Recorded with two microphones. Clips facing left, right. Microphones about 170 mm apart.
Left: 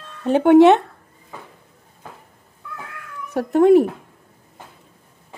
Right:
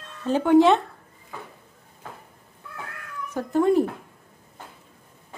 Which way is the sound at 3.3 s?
70° left (ahead or behind).